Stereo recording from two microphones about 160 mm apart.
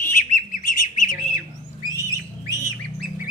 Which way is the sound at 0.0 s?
55° left (ahead or behind).